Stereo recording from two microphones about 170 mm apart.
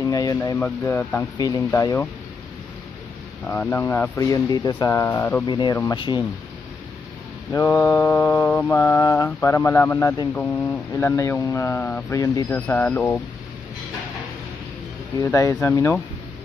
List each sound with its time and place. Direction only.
0.1 s speech: 20° left (ahead or behind)
0.6 s mantra: 10° left (ahead or behind)
1.8 s speech: 20° left (ahead or behind)
3.4 s mantra: 10° left (ahead or behind)
5.5 s speech: 25° left (ahead or behind)
7.5 s mantra: 15° left (ahead or behind)
15.3 s mantra: 20° left (ahead or behind)